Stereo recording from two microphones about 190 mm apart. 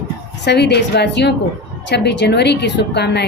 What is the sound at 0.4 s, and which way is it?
A woman's voice, 60° left (ahead or behind).